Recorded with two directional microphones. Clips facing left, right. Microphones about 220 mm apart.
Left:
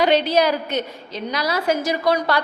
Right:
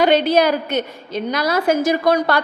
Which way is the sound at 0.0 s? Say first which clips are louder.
Right 3 dB; 50° right (ahead or behind).